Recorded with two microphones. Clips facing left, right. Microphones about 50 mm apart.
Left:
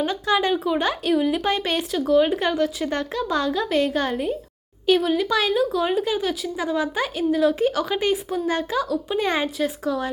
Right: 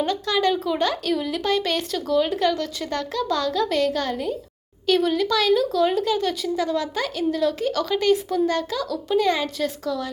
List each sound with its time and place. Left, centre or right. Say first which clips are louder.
0.0 s a woman's voice: even; centre
2.9 s speech: even; left
4.9 s a woman's voice: left 1 dB; centre
5.3 s a woman's voice: right 1 dB; left
9.6 s speech: left 2 dB; centre